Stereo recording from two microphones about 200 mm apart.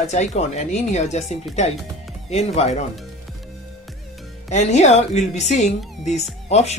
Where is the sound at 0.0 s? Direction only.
35° left (ahead or behind).